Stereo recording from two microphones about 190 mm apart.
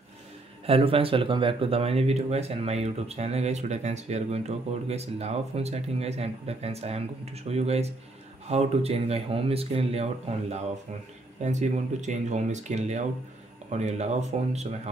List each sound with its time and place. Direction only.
0.7 s speech: 30° right (ahead or behind)